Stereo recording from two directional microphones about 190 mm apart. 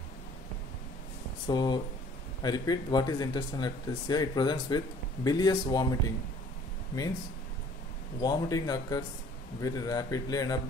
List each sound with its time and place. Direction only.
1.5 s speech: 25° left (ahead or behind)
8.2 s speech: 20° left (ahead or behind)